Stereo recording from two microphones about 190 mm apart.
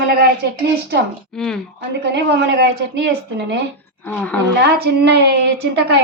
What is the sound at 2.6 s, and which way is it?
A woman's voice, 65° right (ahead or behind).